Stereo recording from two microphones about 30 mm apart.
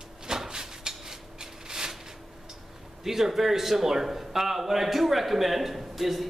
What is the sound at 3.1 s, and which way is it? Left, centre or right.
A man's voice, centre.